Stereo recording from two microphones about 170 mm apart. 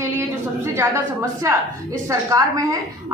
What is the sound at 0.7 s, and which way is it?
A woman's voice, 15° right (ahead or behind).